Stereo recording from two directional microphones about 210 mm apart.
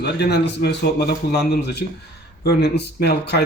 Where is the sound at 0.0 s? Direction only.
50° left (ahead or behind).